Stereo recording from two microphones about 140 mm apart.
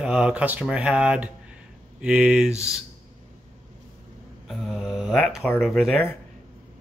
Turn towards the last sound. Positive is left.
turn(degrees=0)  # may be behind; listen again after turning